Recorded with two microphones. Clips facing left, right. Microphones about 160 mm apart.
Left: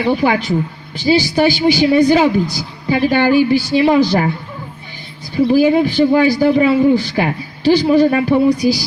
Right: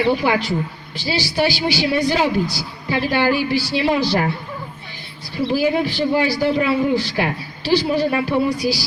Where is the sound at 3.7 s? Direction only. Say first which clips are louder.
Left 6 dB; 50° left (ahead or behind).